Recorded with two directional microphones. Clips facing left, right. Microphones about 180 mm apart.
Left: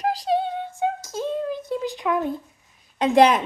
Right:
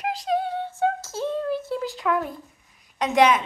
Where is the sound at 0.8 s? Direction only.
15° left (ahead or behind).